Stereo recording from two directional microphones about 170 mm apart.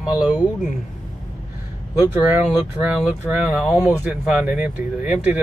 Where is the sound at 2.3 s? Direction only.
10° right (ahead or behind).